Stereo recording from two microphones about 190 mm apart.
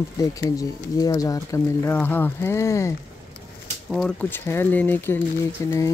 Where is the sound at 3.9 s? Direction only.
5° left (ahead or behind).